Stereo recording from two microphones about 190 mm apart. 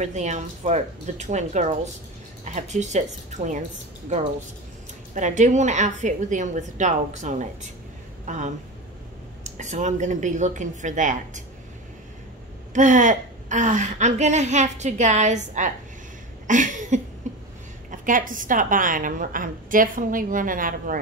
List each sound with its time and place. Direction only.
0.0 s a woman's voice: 40° right (ahead or behind)
5.1 s a woman's voice: 40° right (ahead or behind)
12.7 s a woman's voice: 40° right (ahead or behind)
16.4 s a sound: 40° right (ahead or behind)
17.9 s a woman's voice: 45° right (ahead or behind)